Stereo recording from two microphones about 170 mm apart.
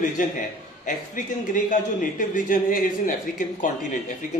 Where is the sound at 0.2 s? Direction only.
50° left (ahead or behind).